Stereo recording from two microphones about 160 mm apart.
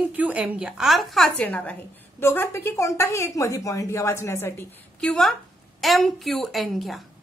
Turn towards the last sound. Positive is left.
turn(degrees=0)  # may be behind; listen again after turning